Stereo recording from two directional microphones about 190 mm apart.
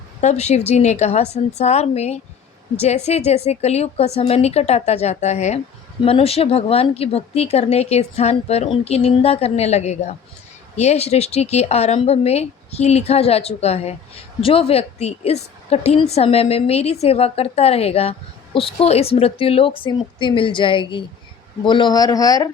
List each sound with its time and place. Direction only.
0.2 s a woman's voice: 35° left (ahead or behind); by 22.4 s 20° left (ahead or behind)